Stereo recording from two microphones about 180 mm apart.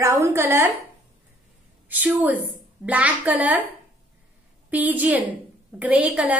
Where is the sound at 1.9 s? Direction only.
10° right (ahead or behind).